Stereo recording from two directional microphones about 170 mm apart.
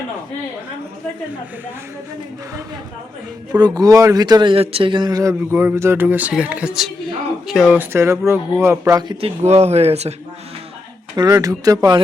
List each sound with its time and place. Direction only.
3.5 s a man's voice: 20° right (ahead or behind)
9.2 s speech: 40° right (ahead or behind)
11.2 s speech: 20° right (ahead or behind)